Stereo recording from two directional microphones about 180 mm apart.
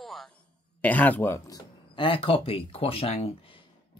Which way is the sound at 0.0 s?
Centre (ahead or behind).